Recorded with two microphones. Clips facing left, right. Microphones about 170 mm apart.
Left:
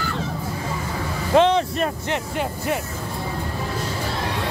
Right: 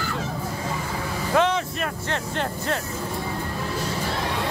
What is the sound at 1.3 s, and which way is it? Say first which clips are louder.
Vehicle: left 5 dB; 25° left (ahead or behind).